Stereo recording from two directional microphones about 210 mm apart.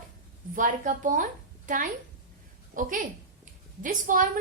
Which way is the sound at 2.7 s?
45° right (ahead or behind).